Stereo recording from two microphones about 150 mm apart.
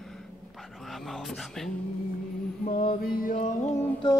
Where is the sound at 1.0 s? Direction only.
Centre (ahead or behind).